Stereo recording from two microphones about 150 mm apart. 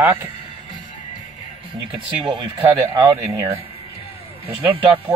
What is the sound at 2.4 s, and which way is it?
Speech, 30° right (ahead or behind).